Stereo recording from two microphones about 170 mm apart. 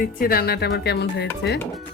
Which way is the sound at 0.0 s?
60° left (ahead or behind).